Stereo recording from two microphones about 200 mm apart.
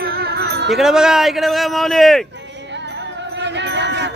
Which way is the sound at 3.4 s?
60° right (ahead or behind).